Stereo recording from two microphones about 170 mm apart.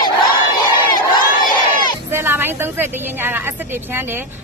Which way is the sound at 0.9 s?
25° left (ahead or behind).